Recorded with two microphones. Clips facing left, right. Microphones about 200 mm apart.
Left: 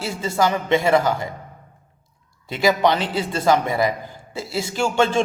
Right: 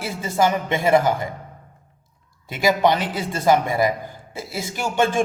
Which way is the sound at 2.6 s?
15° right (ahead or behind).